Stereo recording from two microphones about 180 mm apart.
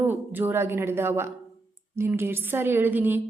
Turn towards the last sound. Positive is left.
turn(degrees=-10)  # may be behind; listen again after turning